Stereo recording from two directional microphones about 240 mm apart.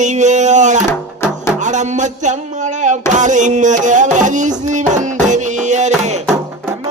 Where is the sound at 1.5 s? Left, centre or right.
Right.